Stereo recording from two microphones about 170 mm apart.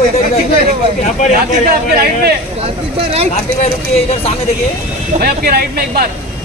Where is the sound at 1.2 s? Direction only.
50° left (ahead or behind).